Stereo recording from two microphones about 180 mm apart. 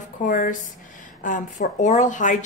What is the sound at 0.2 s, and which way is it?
A woman's voice, 45° left (ahead or behind).